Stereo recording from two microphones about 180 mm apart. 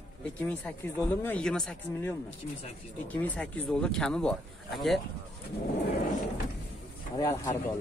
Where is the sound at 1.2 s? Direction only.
5° left (ahead or behind).